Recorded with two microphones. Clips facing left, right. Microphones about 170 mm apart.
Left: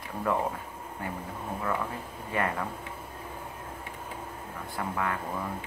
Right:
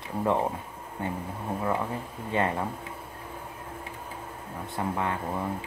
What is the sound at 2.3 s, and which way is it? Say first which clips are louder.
Speech: right 3 dB; 25° right (ahead or behind).